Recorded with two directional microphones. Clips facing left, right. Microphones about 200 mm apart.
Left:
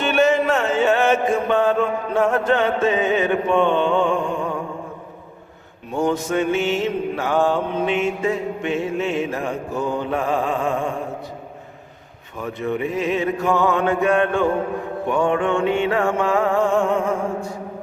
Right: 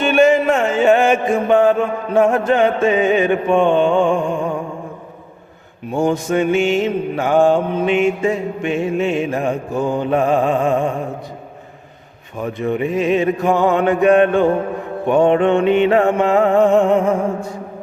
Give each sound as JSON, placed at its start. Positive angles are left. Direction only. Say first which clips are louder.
{"t": 0.0, "sound": "music", "louder": "right 5 dB", "side_deg": -15}
{"t": 5.9, "sound": "mantra", "louder": "right 3 dB", "side_deg": -10}
{"t": 12.4, "sound": "mantra", "louder": "right 4 dB", "side_deg": -20}
{"t": 15.0, "sound": "music", "louder": "right 7 dB", "side_deg": -25}